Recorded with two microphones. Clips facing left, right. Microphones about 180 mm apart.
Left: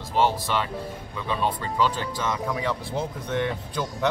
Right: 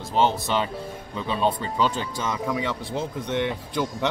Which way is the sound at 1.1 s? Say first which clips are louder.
Right 3 dB; 25° right (ahead or behind).